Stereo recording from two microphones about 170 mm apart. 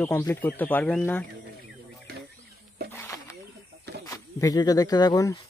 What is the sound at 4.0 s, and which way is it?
Speech, 20° left (ahead or behind).